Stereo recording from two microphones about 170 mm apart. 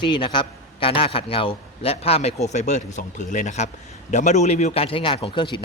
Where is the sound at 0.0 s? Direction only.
25° left (ahead or behind).